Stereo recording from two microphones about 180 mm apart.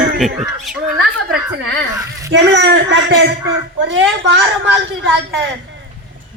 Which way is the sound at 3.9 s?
90° right.